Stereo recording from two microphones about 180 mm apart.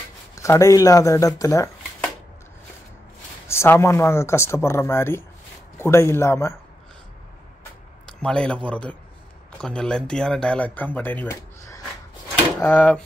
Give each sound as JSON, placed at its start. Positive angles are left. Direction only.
{"t": 0.4, "sound": "speech", "side_deg": 15}
{"t": 3.4, "sound": "speech", "side_deg": 15}
{"t": 8.1, "sound": "speech", "side_deg": 5}